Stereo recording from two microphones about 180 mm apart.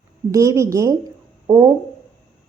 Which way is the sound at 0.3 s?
15° right (ahead or behind).